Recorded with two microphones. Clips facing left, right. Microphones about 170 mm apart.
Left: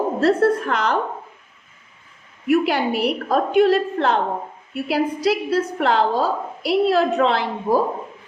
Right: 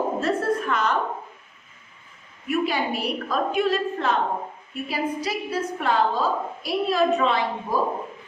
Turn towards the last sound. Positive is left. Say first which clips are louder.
# left 5 dB
turn(degrees=75)  # may be behind; listen again after turning